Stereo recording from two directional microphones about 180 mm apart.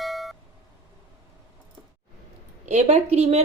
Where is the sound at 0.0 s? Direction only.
Centre (ahead or behind).